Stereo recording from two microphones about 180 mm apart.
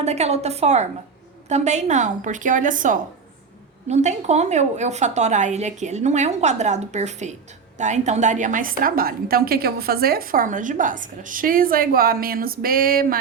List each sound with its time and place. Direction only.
0.0 s a woman's voice: 35° right (ahead or behind); by 13.1 s 55° right (ahead or behind)